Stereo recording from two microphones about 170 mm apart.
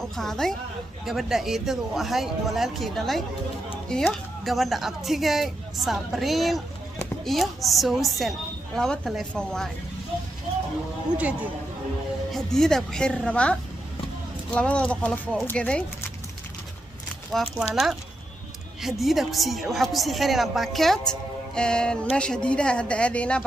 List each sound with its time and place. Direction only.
0.0 s a woman's voice: centre (ahead or behind)
11.2 s speech: 10° right (ahead or behind)
12.3 s a woman's voice: 5° left (ahead or behind)
17.3 s a woman's voice: centre (ahead or behind)
18.8 s a woman's voice: centre (ahead or behind)